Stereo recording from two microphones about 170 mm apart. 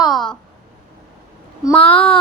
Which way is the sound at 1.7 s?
10° left (ahead or behind).